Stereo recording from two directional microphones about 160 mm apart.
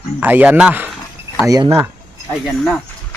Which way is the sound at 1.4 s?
20° right (ahead or behind).